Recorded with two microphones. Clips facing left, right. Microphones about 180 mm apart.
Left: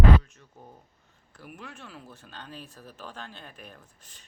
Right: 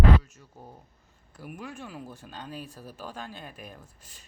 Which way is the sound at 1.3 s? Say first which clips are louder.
Right 4 dB; 10° right (ahead or behind).